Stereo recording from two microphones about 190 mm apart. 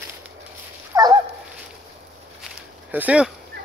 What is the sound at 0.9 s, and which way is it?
Dog, 20° right (ahead or behind).